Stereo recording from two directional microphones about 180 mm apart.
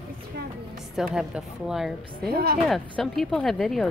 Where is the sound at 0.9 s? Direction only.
Centre (ahead or behind).